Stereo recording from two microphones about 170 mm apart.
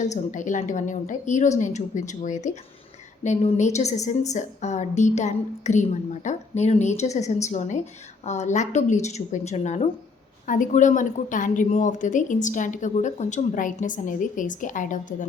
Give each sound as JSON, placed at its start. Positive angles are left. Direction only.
{"t": 0.0, "sound": "a woman's voice", "side_deg": 45}